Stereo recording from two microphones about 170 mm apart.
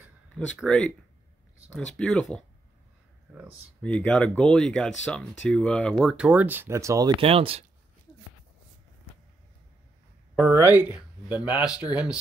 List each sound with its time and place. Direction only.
0.5 s speech: 5° left (ahead or behind)
2.0 s speech: 5° left (ahead or behind)
3.3 s speech: 10° right (ahead or behind)
3.8 s speech: 5° left (ahead or behind); by 7.1 s 20° right (ahead or behind)
7.2 s speech: 35° right (ahead or behind)
10.5 s speech: 15° right (ahead or behind)